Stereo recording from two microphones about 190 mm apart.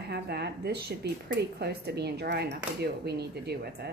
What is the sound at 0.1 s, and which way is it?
A woman's voice, 60° right (ahead or behind).